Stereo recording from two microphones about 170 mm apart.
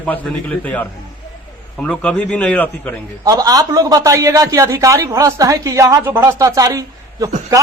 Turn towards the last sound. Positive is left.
turn(degrees=-20)  # may be behind; listen again after turning